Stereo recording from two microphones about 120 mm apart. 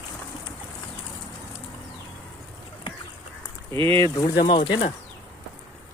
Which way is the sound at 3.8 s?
45° right (ahead or behind).